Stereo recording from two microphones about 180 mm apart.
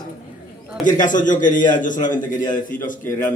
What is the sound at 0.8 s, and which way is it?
Speech, 45° left (ahead or behind).